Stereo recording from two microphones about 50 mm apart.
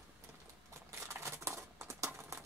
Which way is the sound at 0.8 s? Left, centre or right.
Right.